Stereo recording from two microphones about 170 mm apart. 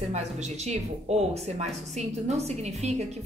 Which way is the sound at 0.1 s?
40° right (ahead or behind).